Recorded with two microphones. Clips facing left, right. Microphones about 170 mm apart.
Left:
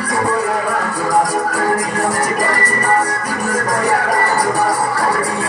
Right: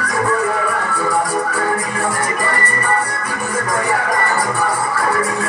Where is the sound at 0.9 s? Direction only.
40° left (ahead or behind).